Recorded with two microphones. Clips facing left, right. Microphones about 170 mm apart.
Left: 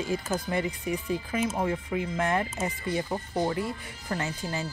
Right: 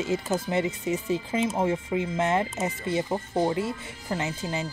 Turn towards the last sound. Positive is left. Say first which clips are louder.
# right 2 dB
turn(degrees=-20)  # may be behind; listen again after turning